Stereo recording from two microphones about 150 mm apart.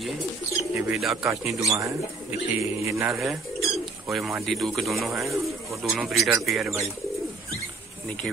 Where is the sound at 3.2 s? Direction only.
Centre (ahead or behind).